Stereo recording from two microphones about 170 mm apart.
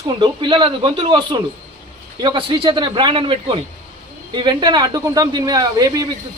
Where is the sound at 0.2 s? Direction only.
30° right (ahead or behind).